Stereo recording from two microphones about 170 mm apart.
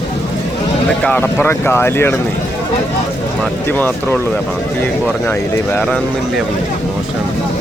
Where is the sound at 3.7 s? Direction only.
10° left (ahead or behind).